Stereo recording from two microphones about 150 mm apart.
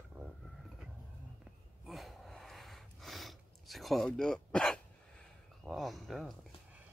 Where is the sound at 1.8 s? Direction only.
Centre (ahead or behind).